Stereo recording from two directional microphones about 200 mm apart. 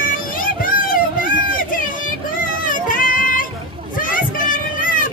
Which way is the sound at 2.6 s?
40° left (ahead or behind).